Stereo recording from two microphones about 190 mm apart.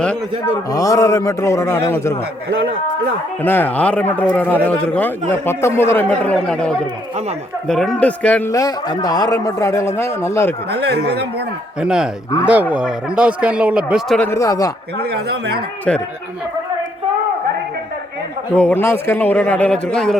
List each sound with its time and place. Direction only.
0.5 s speech: 20° left (ahead or behind)
3.4 s speech: 10° left (ahead or behind)
10.7 s speech: 60° right (ahead or behind)
11.8 s speech: 5° right (ahead or behind)
14.2 s speech: 15° left (ahead or behind)
14.9 s speech: 60° right (ahead or behind)
15.9 s speech: 5° left (ahead or behind)
18.5 s speech: 10° left (ahead or behind)